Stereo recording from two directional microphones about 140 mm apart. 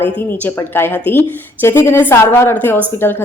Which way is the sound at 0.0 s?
15° left (ahead or behind).